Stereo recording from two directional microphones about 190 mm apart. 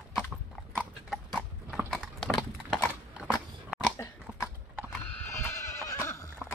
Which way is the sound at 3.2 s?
Centre (ahead or behind).